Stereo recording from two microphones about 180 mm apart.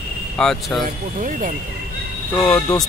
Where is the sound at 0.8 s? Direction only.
45° right (ahead or behind).